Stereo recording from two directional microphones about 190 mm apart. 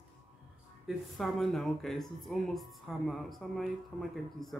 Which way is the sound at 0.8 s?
Centre (ahead or behind).